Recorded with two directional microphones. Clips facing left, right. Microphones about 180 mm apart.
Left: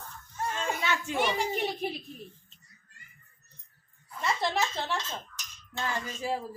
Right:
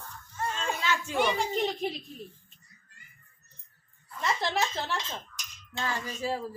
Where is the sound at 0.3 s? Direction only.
15° left (ahead or behind).